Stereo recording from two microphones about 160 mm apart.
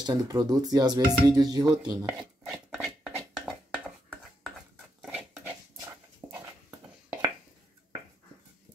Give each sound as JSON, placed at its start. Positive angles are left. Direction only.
{"t": 0.0, "sound": "speech", "side_deg": -25}
{"t": 2.4, "sound": "a sound", "side_deg": -5}
{"t": 5.0, "sound": "dog", "side_deg": -10}